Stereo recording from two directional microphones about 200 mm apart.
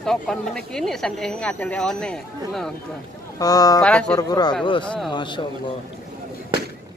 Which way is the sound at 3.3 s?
20° left (ahead or behind).